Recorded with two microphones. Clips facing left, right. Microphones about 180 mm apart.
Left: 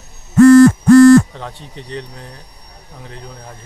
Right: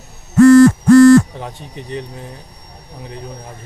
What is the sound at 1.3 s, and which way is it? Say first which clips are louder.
Speech: right 1 dB; 15° right (ahead or behind).